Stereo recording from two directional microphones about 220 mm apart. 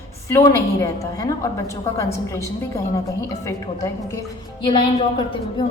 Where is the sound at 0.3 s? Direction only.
10° left (ahead or behind).